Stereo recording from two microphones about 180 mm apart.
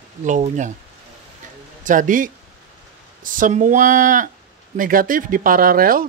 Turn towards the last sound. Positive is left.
turn(degrees=-50)  # may be behind; listen again after turning